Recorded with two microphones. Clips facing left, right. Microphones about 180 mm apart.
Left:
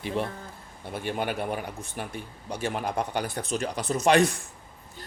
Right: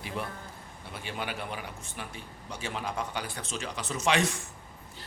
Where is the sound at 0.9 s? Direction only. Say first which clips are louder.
Left 7 dB; 50° left (ahead or behind).